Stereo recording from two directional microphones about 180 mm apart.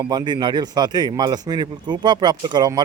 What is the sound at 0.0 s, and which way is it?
Speech, 20° right (ahead or behind).